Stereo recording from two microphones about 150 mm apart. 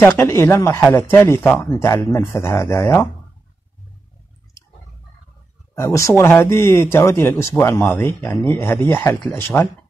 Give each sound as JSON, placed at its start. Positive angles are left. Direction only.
{"t": 0.0, "sound": "speech", "side_deg": 15}
{"t": 5.8, "sound": "speech", "side_deg": 20}